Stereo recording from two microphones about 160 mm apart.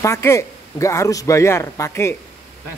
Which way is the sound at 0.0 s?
15° left (ahead or behind).